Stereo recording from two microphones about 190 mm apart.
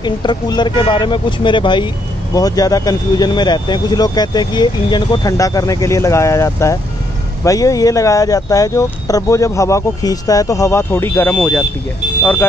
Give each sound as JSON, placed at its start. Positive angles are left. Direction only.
{"t": 0.0, "sound": "speech", "side_deg": 25}